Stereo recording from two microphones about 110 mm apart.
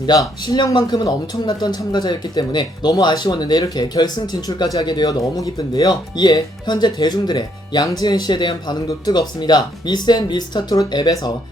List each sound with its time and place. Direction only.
0.0 s speech: 40° left (ahead or behind)